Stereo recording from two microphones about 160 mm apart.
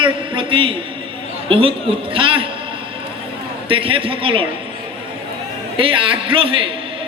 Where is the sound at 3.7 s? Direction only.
35° right (ahead or behind).